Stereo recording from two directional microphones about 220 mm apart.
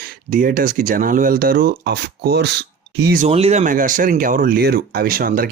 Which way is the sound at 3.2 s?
30° right (ahead or behind).